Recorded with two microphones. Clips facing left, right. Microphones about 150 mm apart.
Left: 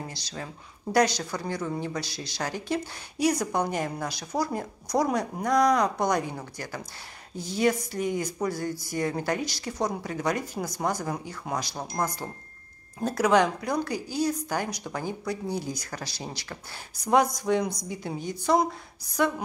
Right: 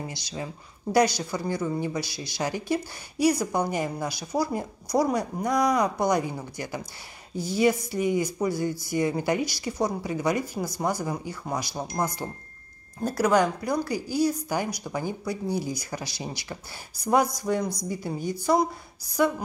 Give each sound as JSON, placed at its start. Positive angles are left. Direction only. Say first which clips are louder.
{"t": 0.0, "sound": "a woman's voice", "louder": "right 3 dB", "side_deg": -10}